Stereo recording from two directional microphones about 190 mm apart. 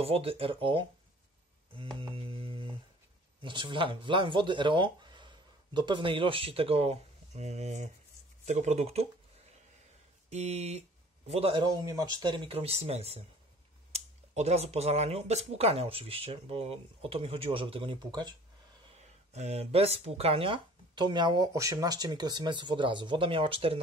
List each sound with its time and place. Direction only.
0.0 s speech: 30° right (ahead or behind)
1.7 s a sound: 30° right (ahead or behind)
3.4 s speech: 25° right (ahead or behind)
10.3 s speech: 35° right (ahead or behind)
18.9 s speech: 35° right (ahead or behind)